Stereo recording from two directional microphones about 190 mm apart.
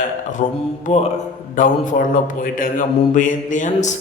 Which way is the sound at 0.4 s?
40° left (ahead or behind).